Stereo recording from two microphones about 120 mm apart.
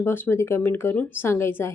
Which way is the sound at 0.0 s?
20° left (ahead or behind).